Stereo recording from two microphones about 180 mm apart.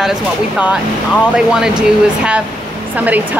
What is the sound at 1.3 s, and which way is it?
Speech, 5° right (ahead or behind).